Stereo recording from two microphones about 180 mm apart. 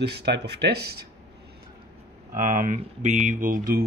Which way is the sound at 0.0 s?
70° right (ahead or behind).